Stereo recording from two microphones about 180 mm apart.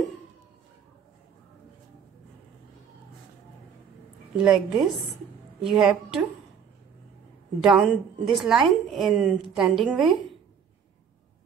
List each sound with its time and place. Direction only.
4.4 s a woman's voice: 5° right (ahead or behind)
7.6 s a woman's voice: centre (ahead or behind)